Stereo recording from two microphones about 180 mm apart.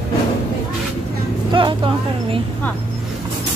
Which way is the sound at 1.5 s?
25° right (ahead or behind).